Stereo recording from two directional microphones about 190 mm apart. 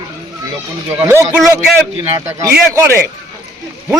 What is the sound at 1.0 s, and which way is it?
Speech, 10° right (ahead or behind).